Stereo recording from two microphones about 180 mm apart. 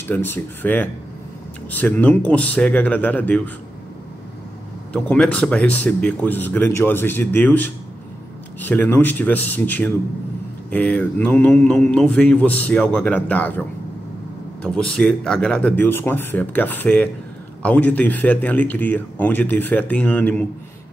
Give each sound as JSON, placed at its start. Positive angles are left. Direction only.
{"t": 0.0, "sound": "speech", "side_deg": 10}
{"t": 4.9, "sound": "speech", "side_deg": 5}